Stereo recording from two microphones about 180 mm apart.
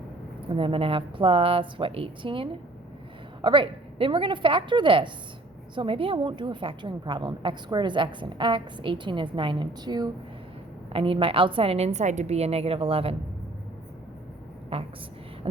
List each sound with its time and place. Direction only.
0.4 s a woman's voice: 30° right (ahead or behind)
14.7 s a woman's voice: 35° right (ahead or behind)